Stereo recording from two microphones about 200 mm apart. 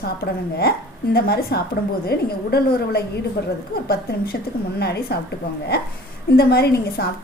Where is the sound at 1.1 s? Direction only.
50° left (ahead or behind).